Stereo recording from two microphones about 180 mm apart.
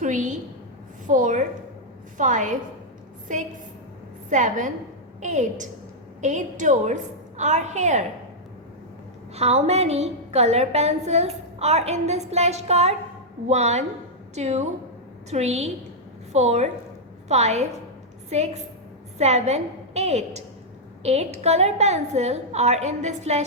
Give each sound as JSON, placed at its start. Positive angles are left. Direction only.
{"t": 0.0, "sound": "a woman's voice", "side_deg": -45}
{"t": 9.3, "sound": "a woman's voice", "side_deg": -35}